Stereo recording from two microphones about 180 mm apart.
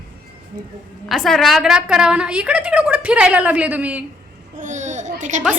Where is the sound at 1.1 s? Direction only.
Centre (ahead or behind).